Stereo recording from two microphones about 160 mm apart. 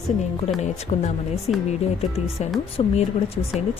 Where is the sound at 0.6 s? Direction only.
45° left (ahead or behind).